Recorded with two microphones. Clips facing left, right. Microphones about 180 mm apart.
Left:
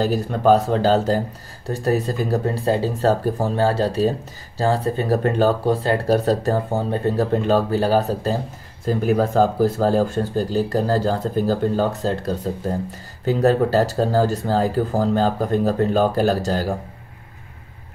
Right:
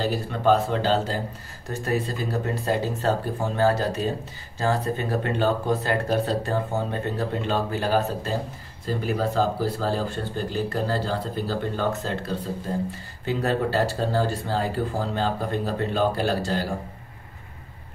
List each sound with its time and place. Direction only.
0.0 s speech: 45° left (ahead or behind)
2.5 s speech: 30° left (ahead or behind)
8.8 s speech: 45° left (ahead or behind)